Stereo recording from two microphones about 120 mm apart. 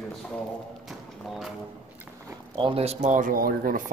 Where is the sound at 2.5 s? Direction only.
50° right (ahead or behind); by 3.3 s 75° right (ahead or behind).